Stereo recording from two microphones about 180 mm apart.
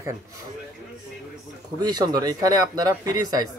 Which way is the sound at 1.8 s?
25° right (ahead or behind).